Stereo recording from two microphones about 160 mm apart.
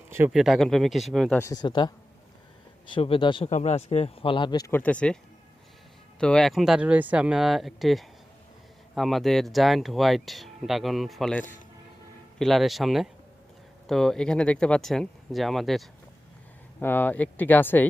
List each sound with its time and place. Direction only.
0.3 s speech: centre (ahead or behind)
1.4 s speech: 20° left (ahead or behind)
2.9 s speech: 35° left (ahead or behind)
3.5 s speech: 45° left (ahead or behind); by 4.7 s 25° left (ahead or behind)
4.7 s speech: 10° left (ahead or behind)
6.1 s speech: 5° left (ahead or behind)
16.8 s speech: 10° left (ahead or behind)